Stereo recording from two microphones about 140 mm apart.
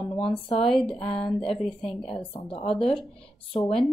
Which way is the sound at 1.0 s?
45° left (ahead or behind).